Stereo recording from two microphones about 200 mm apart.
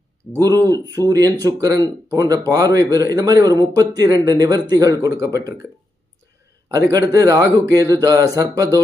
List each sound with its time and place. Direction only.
0.3 s speech: 15° right (ahead or behind)
6.7 s speech: 15° right (ahead or behind)